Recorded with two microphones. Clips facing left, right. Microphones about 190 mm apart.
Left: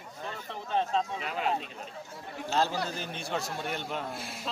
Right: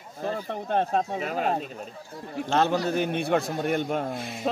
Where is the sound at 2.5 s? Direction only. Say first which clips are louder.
Right 7 dB; 65° right (ahead or behind).